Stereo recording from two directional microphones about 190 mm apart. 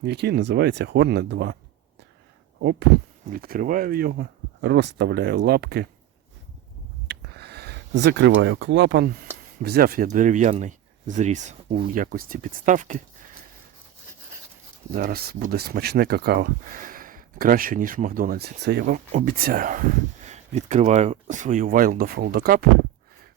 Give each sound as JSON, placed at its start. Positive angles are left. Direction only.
{"t": 0.0, "sound": "speech", "side_deg": -60}
{"t": 2.6, "sound": "a sound", "side_deg": -60}
{"t": 3.2, "sound": "speech", "side_deg": -50}
{"t": 7.1, "sound": "a sound", "side_deg": -60}
{"t": 9.6, "sound": "speech", "side_deg": -55}
{"t": 14.9, "sound": "speech", "side_deg": -50}
{"t": 19.1, "sound": "speech", "side_deg": -50}